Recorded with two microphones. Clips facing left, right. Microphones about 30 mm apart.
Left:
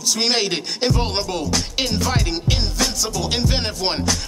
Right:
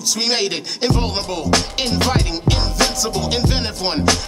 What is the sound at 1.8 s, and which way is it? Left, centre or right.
Music, right.